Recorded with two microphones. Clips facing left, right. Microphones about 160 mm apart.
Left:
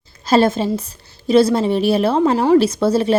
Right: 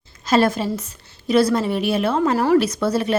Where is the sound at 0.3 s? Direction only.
25° left (ahead or behind).